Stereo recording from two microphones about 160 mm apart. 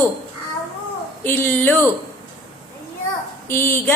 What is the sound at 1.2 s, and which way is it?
Speech, 15° left (ahead or behind).